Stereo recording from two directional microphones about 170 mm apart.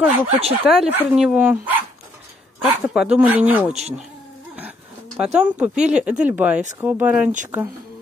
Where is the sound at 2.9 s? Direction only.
5° right (ahead or behind).